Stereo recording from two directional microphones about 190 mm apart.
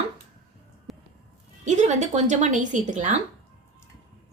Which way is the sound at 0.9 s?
Centre (ahead or behind).